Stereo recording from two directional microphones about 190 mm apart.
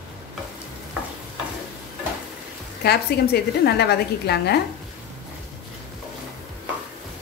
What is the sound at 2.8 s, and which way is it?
A woman's voice, 60° left (ahead or behind).